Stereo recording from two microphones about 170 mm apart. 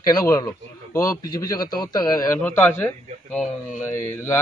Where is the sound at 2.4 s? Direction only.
10° left (ahead or behind).